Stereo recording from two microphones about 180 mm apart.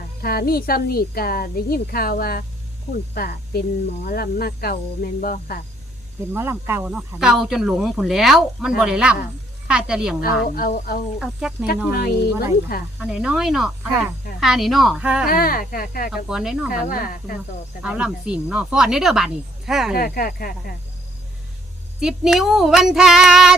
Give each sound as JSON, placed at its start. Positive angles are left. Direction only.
{"t": 0.2, "sound": "speech", "side_deg": 55}
{"t": 6.3, "sound": "speech", "side_deg": -15}
{"t": 10.2, "sound": "speech", "side_deg": 55}
{"t": 11.2, "sound": "speech", "side_deg": -5}
{"t": 11.9, "sound": "speech", "side_deg": 60}
{"t": 13.0, "sound": "speech", "side_deg": -5}
{"t": 15.3, "sound": "speech", "side_deg": 55}
{"t": 16.1, "sound": "speech", "side_deg": -5}
{"t": 16.9, "sound": "speech", "side_deg": 50}
{"t": 17.8, "sound": "speech", "side_deg": -5}
{"t": 20.0, "sound": "speech", "side_deg": 55}
{"t": 22.0, "sound": "speech", "side_deg": 0}